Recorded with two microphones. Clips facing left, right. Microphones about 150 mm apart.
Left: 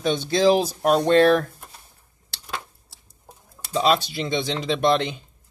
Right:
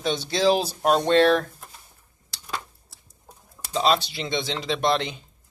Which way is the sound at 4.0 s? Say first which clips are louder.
Left 3 dB; 45° left (ahead or behind).